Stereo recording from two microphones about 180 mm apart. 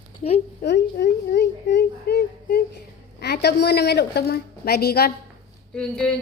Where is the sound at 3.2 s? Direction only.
65° left (ahead or behind).